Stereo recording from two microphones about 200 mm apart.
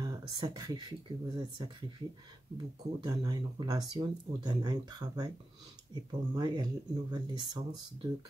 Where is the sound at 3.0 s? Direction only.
20° right (ahead or behind).